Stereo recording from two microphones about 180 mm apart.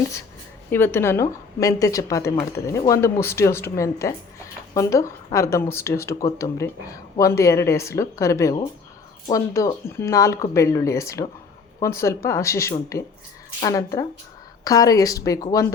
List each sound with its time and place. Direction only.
0.7 s speech: 10° left (ahead or behind)